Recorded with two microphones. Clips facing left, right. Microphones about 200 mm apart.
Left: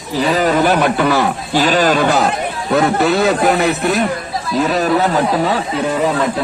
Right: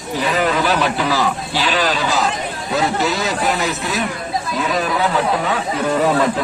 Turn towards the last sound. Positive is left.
turn(degrees=40)  # may be behind; listen again after turning